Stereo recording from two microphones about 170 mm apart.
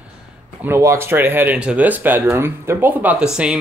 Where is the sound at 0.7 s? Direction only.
15° right (ahead or behind).